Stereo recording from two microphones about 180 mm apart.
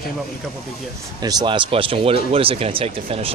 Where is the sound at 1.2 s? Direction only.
20° right (ahead or behind).